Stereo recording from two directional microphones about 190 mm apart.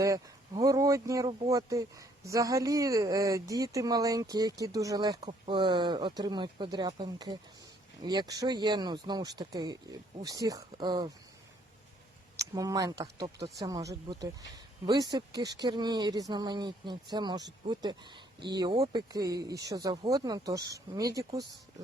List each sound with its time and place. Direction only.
0.0 s speech: 20° right (ahead or behind)
12.4 s speech: 20° right (ahead or behind)